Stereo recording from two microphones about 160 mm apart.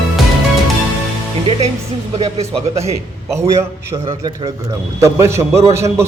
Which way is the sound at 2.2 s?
35° right (ahead or behind).